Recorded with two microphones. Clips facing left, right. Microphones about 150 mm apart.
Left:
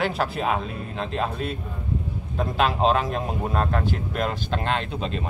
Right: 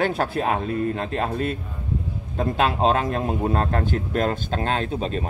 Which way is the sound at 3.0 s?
45° right (ahead or behind).